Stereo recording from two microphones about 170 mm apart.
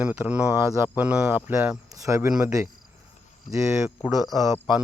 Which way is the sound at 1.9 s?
20° right (ahead or behind).